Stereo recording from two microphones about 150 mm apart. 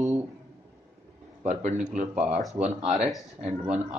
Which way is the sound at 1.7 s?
5° right (ahead or behind).